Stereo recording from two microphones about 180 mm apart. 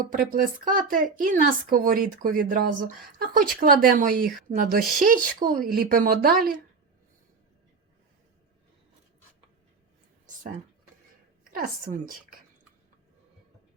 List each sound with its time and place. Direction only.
0.1 s a woman's voice: 50° right (ahead or behind)
10.2 s a sound: 45° right (ahead or behind)
11.5 s speech: 50° right (ahead or behind)